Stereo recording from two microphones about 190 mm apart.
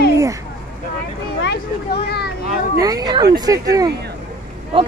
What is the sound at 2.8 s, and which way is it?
Speech, 20° right (ahead or behind).